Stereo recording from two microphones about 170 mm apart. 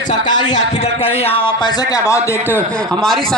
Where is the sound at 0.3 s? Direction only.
25° left (ahead or behind).